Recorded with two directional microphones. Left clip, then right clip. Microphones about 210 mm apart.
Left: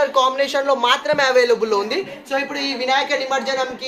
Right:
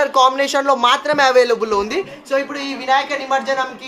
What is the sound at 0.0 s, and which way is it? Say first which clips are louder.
A man's voice: right 3 dB; 60° right (ahead or behind).